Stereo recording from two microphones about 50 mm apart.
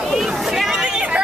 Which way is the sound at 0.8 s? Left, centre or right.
Centre.